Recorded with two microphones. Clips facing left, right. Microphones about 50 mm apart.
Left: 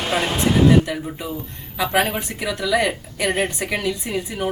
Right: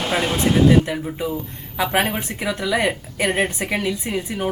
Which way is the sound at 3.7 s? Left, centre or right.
Right.